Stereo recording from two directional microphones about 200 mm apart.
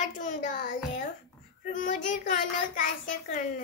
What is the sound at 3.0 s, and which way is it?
Speech, 40° left (ahead or behind).